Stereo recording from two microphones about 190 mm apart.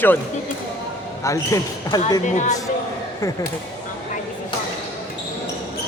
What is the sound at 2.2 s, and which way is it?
Speech, 40° left (ahead or behind).